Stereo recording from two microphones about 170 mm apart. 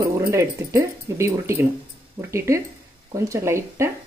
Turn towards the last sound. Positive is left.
turn(degrees=-15)  # may be behind; listen again after turning